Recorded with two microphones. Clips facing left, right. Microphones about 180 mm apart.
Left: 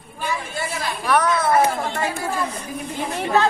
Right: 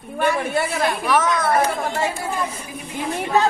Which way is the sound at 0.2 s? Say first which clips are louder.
Right 7 dB; 60° right (ahead or behind).